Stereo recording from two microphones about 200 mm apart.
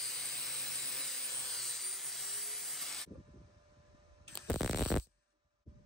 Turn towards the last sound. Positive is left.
turn(degrees=0)  # may be behind; listen again after turning